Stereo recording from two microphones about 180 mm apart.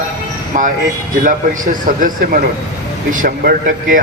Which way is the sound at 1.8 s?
50° right (ahead or behind).